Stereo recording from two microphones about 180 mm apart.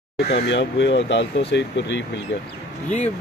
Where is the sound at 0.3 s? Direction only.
75° left (ahead or behind).